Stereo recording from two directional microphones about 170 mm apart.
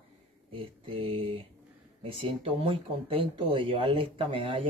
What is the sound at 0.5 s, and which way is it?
Speech, 30° right (ahead or behind).